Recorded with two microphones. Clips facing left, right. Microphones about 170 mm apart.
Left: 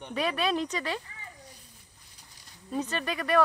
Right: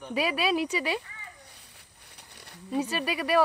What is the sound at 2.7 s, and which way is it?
Speech, 10° right (ahead or behind).